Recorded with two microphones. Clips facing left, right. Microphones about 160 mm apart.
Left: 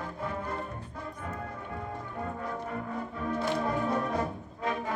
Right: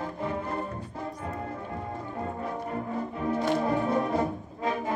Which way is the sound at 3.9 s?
30° right (ahead or behind).